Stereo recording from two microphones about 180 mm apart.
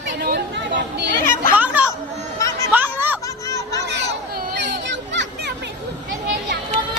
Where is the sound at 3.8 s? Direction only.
75° right (ahead or behind).